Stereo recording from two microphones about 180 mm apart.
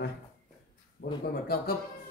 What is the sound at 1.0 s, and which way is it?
Speech, 55° left (ahead or behind).